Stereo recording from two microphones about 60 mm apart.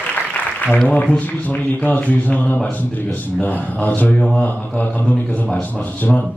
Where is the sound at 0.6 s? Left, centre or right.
Left.